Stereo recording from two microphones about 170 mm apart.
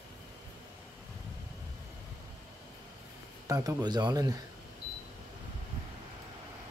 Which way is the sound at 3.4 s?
20° right (ahead or behind).